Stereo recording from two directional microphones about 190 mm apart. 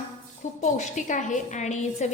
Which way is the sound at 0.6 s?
40° left (ahead or behind).